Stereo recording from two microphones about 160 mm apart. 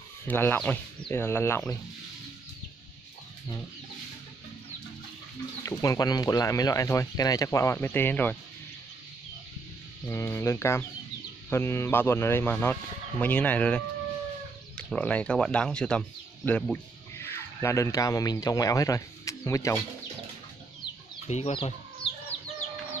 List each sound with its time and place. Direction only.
0.3 s speech: 10° left (ahead or behind)
5.6 s speech: 20° left (ahead or behind)
10.0 s speech: 15° left (ahead or behind)
21.3 s speech: 40° left (ahead or behind)
22.0 s chicken: 35° left (ahead or behind)